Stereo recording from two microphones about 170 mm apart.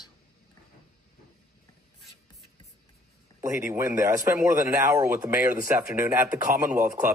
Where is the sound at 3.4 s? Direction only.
15° right (ahead or behind).